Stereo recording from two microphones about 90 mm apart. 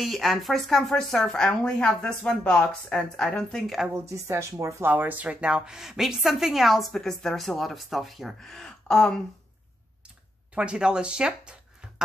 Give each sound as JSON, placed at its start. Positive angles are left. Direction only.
{"t": 0.0, "sound": "a woman's voice", "side_deg": 0}
{"t": 3.9, "sound": "speech", "side_deg": -30}
{"t": 4.8, "sound": "a woman's voice", "side_deg": -20}
{"t": 10.5, "sound": "speech", "side_deg": -10}